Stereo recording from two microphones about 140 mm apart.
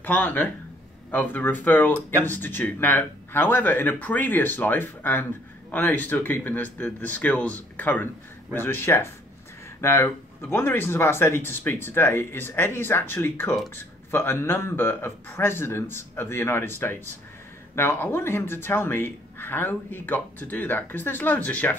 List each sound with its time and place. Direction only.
0.0 s speech: 10° left (ahead or behind)